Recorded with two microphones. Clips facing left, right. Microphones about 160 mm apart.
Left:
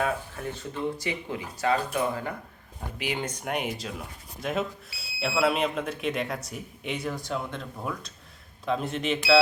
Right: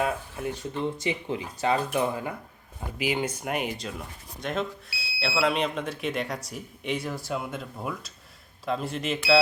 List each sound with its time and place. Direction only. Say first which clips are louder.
0.0 s speech: right 1 dB; 15° right (ahead or behind)
3.0 s speech: right 4 dB; 5° right (ahead or behind)